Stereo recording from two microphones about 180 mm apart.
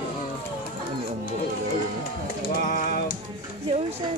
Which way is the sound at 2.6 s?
50° left (ahead or behind).